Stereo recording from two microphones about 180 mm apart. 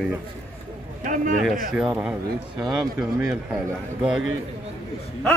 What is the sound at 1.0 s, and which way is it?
Speech, 45° right (ahead or behind).